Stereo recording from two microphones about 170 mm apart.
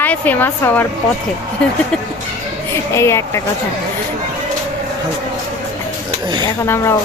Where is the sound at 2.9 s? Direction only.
15° left (ahead or behind).